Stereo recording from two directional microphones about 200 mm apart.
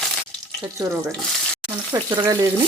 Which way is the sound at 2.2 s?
15° right (ahead or behind).